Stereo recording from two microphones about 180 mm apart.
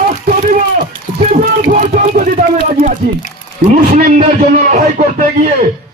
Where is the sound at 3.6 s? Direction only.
55° right (ahead or behind).